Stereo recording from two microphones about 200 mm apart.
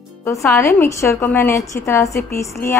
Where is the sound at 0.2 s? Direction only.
15° left (ahead or behind).